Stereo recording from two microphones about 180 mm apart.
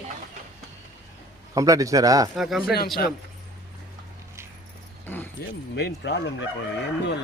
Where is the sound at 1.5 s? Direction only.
20° right (ahead or behind).